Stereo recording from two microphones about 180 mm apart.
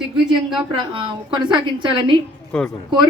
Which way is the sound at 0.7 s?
25° right (ahead or behind).